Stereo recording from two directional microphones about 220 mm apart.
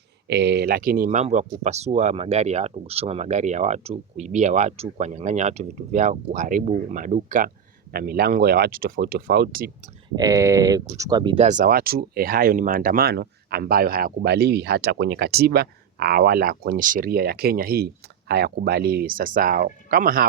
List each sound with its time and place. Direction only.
0.3 s speech: 50° right (ahead or behind)
10.2 s speech: 15° right (ahead or behind)
11.4 s speech: 40° right (ahead or behind)